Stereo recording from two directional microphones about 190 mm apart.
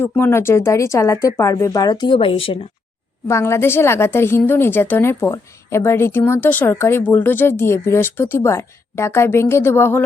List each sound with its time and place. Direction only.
0.0 s a woman's voice: 10° left (ahead or behind); by 2.6 s 30° left (ahead or behind)
3.2 s a woman's voice: 15° left (ahead or behind)